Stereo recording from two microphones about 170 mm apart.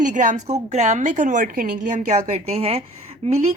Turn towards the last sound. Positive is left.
turn(degrees=-40)  # may be behind; listen again after turning